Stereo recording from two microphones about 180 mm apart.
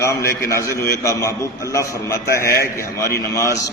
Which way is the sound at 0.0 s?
15° left (ahead or behind).